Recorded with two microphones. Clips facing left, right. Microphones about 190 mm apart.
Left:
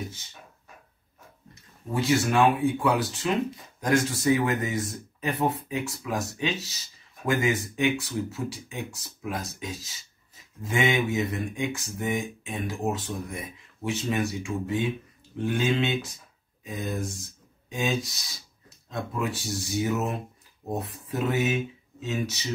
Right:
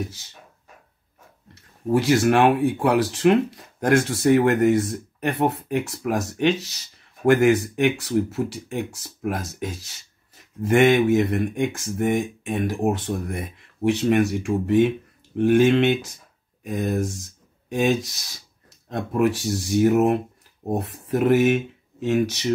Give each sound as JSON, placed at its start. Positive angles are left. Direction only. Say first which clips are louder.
{"t": 1.5, "sound": "speech", "louder": "right 11 dB", "side_deg": -75}